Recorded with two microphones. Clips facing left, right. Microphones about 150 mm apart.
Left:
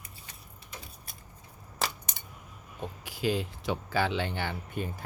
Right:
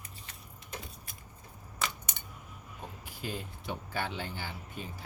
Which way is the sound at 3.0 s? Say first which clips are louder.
Left 10 dB; 90° left.